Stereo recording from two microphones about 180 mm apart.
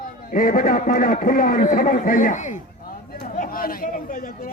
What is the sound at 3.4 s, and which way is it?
Chatter, 55° left (ahead or behind).